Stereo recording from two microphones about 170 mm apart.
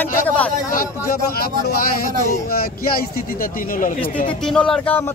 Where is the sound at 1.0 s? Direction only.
60° left (ahead or behind).